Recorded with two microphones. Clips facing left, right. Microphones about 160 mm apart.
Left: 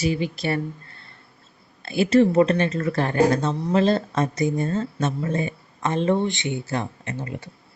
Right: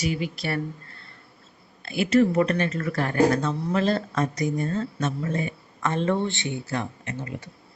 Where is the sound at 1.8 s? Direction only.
30° left (ahead or behind).